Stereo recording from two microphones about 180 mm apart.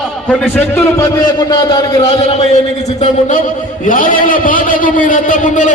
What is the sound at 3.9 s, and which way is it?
A man's voice, 50° left (ahead or behind).